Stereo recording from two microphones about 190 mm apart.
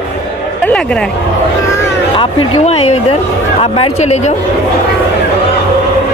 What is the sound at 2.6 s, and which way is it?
Speech, 35° left (ahead or behind).